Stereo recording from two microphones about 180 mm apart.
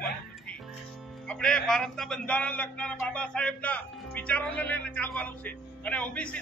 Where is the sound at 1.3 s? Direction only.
5° left (ahead or behind).